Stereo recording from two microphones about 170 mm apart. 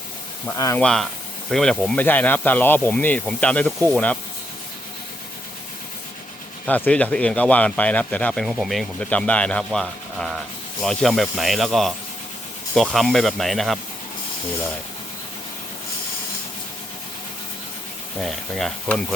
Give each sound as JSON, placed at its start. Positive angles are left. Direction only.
{"t": 0.4, "sound": "speech", "side_deg": 15}
{"t": 0.8, "sound": "speech", "side_deg": 5}
{"t": 6.7, "sound": "speech", "side_deg": 10}
{"t": 18.2, "sound": "speech", "side_deg": 0}